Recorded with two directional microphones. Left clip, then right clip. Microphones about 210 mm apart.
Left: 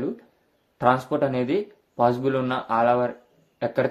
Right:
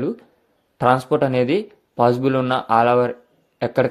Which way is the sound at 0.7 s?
40° right (ahead or behind).